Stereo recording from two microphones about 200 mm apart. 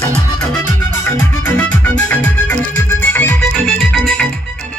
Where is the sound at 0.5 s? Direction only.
10° left (ahead or behind).